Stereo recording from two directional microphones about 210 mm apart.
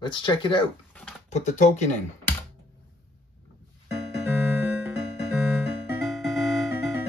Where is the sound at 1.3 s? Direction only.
35° left (ahead or behind).